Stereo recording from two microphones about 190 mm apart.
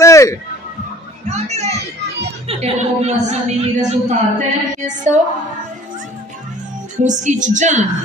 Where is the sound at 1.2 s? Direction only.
35° right (ahead or behind).